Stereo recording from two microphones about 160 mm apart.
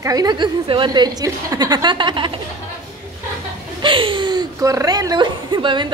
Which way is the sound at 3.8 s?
30° right (ahead or behind).